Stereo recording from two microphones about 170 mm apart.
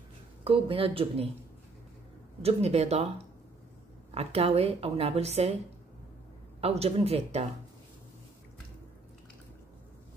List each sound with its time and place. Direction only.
0.4 s a woman's voice: 35° right (ahead or behind)
2.4 s a woman's voice: 40° right (ahead or behind)
4.1 s a woman's voice: 35° right (ahead or behind)
6.6 s a woman's voice: 35° right (ahead or behind)